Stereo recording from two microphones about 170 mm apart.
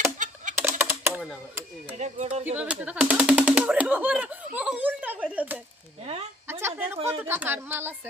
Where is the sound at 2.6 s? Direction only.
5° right (ahead or behind).